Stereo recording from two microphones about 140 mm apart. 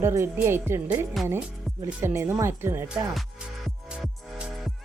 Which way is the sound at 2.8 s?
5° right (ahead or behind).